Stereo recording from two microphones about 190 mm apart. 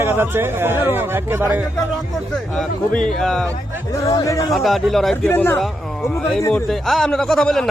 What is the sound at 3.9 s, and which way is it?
Speech, 15° left (ahead or behind).